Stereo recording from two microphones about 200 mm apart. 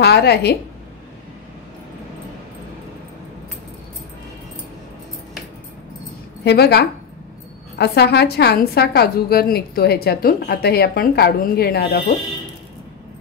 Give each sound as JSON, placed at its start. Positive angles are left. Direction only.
{"t": 0.0, "sound": "a woman's voice", "side_deg": 55}
{"t": 6.4, "sound": "a woman's voice", "side_deg": 55}